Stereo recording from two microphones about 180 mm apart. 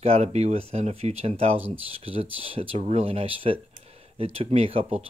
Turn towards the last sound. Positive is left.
turn(degrees=-35)  # may be behind; listen again after turning